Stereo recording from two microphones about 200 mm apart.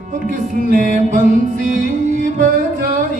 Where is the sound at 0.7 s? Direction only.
40° right (ahead or behind).